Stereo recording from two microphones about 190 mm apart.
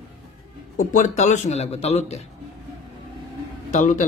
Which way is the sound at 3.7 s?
40° left (ahead or behind).